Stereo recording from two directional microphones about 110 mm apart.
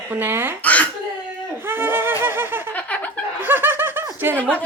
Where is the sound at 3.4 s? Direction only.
20° right (ahead or behind).